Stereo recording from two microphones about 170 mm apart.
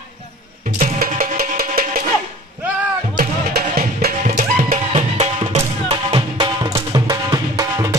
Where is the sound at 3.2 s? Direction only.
60° right (ahead or behind).